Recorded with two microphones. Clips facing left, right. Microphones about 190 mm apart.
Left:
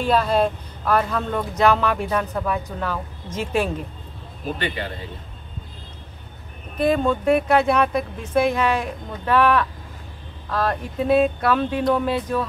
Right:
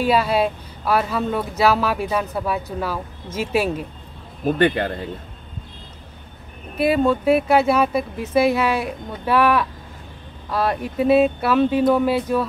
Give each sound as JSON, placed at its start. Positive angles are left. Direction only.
{"t": 0.0, "sound": "speech", "side_deg": -10}
{"t": 4.5, "sound": "a man's voice", "side_deg": -50}
{"t": 6.8, "sound": "speech", "side_deg": -5}